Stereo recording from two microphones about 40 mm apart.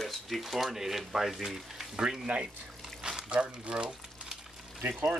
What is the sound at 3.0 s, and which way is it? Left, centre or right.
Water, centre.